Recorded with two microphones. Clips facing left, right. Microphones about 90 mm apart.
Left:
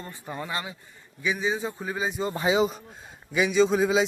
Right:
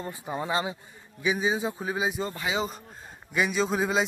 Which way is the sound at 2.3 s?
30° left (ahead or behind).